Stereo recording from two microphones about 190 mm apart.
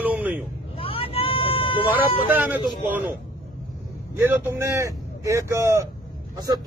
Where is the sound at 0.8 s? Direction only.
30° left (ahead or behind).